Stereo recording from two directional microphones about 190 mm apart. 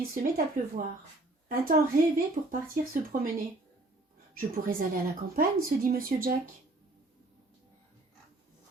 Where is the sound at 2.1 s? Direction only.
45° right (ahead or behind).